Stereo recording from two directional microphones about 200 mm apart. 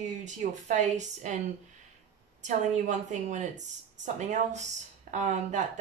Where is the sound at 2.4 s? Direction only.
35° right (ahead or behind).